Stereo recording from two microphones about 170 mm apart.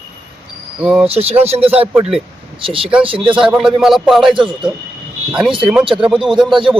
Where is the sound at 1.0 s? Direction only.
35° right (ahead or behind).